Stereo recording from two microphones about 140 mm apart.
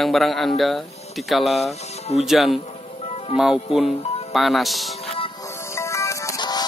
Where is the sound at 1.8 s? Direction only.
50° left (ahead or behind).